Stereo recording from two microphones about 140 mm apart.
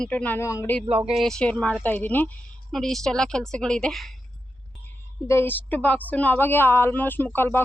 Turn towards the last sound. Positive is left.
turn(degrees=15)  # may be behind; listen again after turning